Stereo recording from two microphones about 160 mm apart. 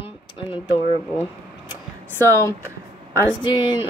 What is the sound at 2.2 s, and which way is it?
Speech, 15° left (ahead or behind).